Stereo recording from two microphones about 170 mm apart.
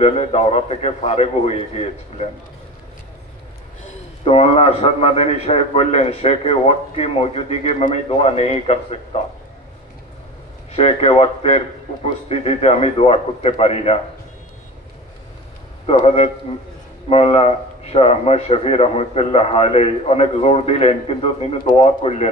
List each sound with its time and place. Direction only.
0.0 s a man's voice: 35° left (ahead or behind)
3.8 s a man's voice: 35° left (ahead or behind)
10.8 s a man's voice: 35° left (ahead or behind)
15.9 s a man's voice: 40° left (ahead or behind)